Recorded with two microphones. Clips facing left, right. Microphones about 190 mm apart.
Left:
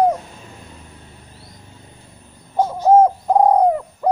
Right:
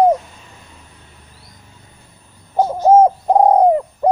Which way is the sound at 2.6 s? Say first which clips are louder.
Right 2 dB; 20° right (ahead or behind).